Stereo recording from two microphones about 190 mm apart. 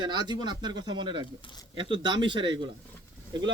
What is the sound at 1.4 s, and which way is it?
Speech, 25° left (ahead or behind).